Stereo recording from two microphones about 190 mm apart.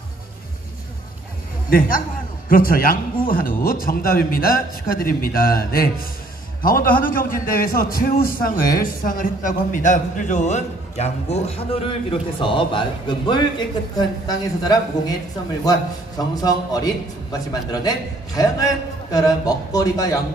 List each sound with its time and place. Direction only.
2.5 s a man's voice: 50° left (ahead or behind); by 20.2 s 20° left (ahead or behind)